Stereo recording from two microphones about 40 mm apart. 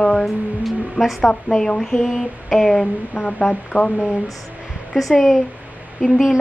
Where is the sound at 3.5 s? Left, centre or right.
Left.